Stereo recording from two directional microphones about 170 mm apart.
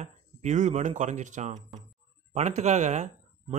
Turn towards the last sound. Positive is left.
turn(degrees=-40)  # may be behind; listen again after turning